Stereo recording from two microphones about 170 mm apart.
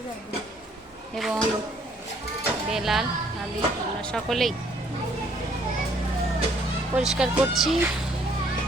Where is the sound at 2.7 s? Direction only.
Centre (ahead or behind).